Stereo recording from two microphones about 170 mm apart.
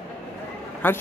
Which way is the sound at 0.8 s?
10° left (ahead or behind).